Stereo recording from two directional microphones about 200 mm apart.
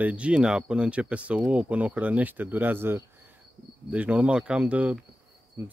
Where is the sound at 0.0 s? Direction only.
5° right (ahead or behind).